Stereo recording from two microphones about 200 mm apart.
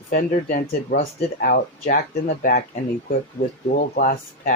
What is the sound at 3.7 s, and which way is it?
Speech, 45° left (ahead or behind).